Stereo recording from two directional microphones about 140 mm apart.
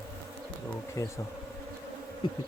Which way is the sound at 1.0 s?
20° left (ahead or behind).